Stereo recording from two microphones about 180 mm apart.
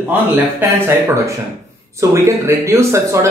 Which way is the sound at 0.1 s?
10° right (ahead or behind).